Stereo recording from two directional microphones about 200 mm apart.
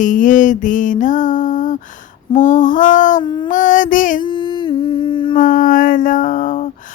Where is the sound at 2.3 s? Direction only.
40° left (ahead or behind).